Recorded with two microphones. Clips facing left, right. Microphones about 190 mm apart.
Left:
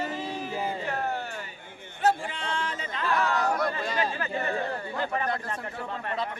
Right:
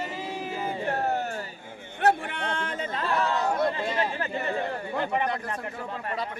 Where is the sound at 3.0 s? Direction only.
30° right (ahead or behind).